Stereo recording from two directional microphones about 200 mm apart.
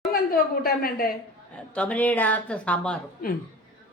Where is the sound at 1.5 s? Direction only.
5° left (ahead or behind).